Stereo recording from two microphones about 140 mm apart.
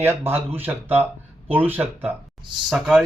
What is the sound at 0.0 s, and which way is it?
Speech, 15° right (ahead or behind).